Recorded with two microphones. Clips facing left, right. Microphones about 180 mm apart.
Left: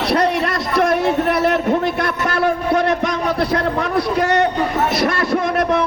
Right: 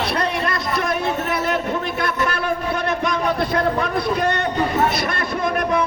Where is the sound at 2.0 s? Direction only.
80° left.